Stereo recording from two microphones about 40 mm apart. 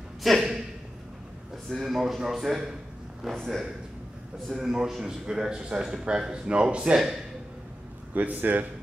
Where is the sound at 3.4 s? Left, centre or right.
Centre.